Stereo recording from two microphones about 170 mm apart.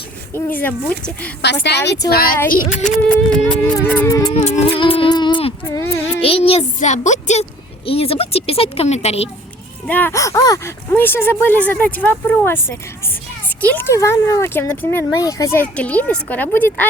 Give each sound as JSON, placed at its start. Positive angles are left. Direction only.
{"t": 0.6, "sound": "speech", "side_deg": 10}
{"t": 1.6, "sound": "a woman's voice", "side_deg": 85}
{"t": 2.0, "sound": "speech", "side_deg": 65}
{"t": 2.8, "sound": "speech", "side_deg": 5}
{"t": 4.4, "sound": "a woman's voice", "side_deg": 40}
{"t": 4.8, "sound": "a sound", "side_deg": 30}
{"t": 5.6, "sound": "speech", "side_deg": 15}
{"t": 6.2, "sound": "a woman's voice", "side_deg": 35}
{"t": 9.8, "sound": "speech", "side_deg": 10}
{"t": 13.6, "sound": "speech", "side_deg": 10}